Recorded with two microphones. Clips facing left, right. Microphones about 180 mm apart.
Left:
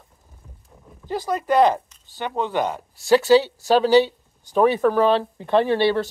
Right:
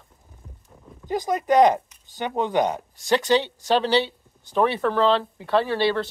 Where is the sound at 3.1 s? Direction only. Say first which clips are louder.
Left 5 dB; 5° left (ahead or behind).